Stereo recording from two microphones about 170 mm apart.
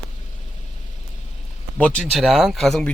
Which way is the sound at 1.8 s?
5° left (ahead or behind).